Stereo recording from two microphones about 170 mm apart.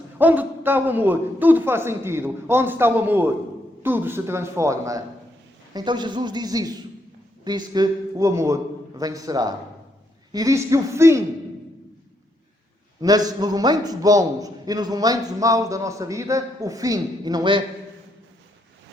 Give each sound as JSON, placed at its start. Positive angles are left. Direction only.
{"t": 0.2, "sound": "a man's voice", "side_deg": -10}
{"t": 13.0, "sound": "a man's voice", "side_deg": -20}